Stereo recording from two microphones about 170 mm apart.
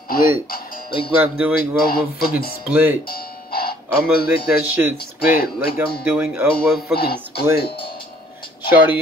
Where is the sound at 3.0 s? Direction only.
60° left (ahead or behind).